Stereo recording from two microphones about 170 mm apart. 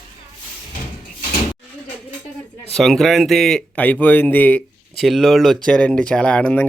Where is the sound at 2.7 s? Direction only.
Centre (ahead or behind).